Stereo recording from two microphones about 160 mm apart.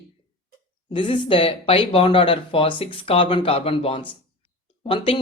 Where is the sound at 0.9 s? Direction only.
30° left (ahead or behind).